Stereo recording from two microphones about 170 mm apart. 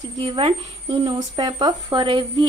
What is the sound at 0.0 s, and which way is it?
A woman's voice, 30° right (ahead or behind).